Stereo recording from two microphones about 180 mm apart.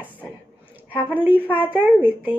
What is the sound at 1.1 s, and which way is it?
A woman's voice, 10° right (ahead or behind).